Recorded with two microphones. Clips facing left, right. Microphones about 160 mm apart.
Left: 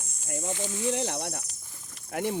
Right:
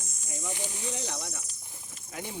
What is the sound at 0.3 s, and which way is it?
Speech, 55° left (ahead or behind).